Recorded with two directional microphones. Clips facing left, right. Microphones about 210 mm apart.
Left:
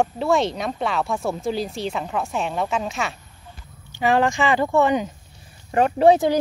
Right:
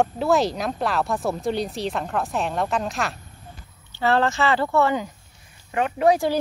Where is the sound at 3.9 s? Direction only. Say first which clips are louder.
Left 2 dB; 15° left (ahead or behind).